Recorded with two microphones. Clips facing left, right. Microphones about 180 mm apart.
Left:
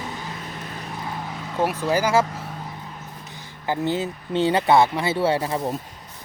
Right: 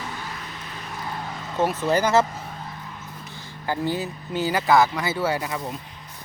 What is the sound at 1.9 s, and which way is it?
Speech, 10° left (ahead or behind).